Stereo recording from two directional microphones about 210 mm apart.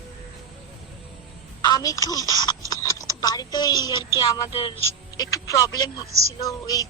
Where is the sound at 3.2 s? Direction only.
20° left (ahead or behind).